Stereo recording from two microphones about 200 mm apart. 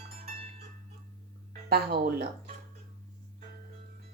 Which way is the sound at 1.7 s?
50° right (ahead or behind).